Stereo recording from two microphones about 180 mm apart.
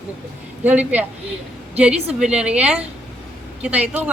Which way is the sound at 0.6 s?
10° right (ahead or behind).